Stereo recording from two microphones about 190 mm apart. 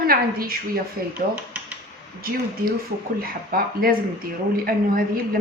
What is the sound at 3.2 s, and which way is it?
Speech, 50° right (ahead or behind).